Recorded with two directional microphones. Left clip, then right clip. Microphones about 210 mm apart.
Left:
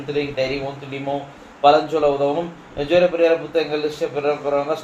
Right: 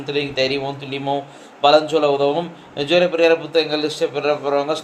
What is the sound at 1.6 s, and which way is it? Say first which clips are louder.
A man's voice: right 1 dB; 40° right (ahead or behind).